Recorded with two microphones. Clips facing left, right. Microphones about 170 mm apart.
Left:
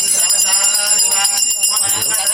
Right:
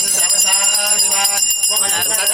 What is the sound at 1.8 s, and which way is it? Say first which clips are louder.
Speech: right 3 dB; 65° right (ahead or behind).